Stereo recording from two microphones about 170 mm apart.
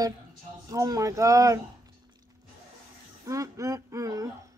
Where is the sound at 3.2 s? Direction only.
20° right (ahead or behind).